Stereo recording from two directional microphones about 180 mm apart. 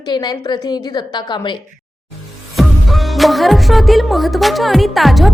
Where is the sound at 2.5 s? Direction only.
Centre (ahead or behind).